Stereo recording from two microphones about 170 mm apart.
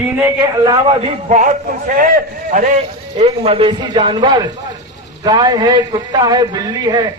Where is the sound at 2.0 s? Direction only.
55° right (ahead or behind).